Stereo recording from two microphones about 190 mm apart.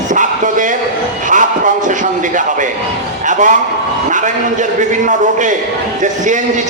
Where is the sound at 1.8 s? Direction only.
40° right (ahead or behind).